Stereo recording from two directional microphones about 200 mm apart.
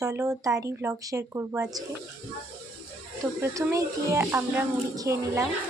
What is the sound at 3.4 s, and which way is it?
Speech, 15° right (ahead or behind).